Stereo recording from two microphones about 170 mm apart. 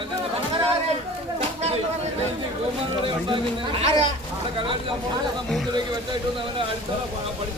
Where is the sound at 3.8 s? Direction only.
40° right (ahead or behind).